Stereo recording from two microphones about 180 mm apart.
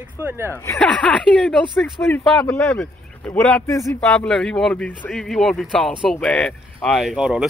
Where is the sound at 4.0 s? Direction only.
5° left (ahead or behind).